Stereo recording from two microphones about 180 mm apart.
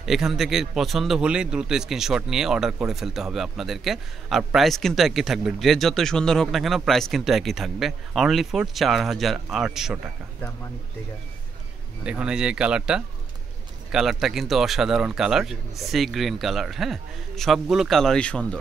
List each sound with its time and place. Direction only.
0.0 s speech: centre (ahead or behind)
12.0 s speech: 5° right (ahead or behind)